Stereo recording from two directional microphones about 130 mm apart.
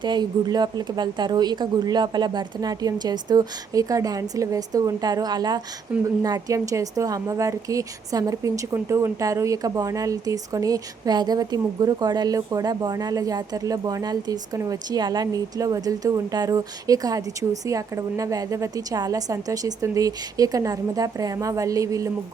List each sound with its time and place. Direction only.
0.0 s a woman's voice: 35° right (ahead or behind)
5.9 s speech: 10° right (ahead or behind)
6.2 s a woman's voice: 25° right (ahead or behind)